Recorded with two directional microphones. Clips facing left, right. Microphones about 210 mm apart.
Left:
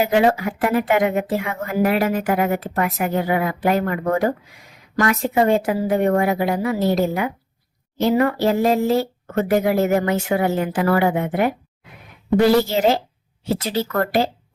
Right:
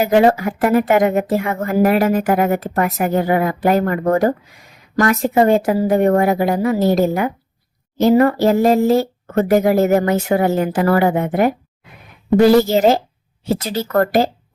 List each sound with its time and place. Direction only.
0.0 s a woman's voice: 45° right (ahead or behind)